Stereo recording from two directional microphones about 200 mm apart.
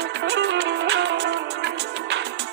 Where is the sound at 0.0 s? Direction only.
60° right (ahead or behind).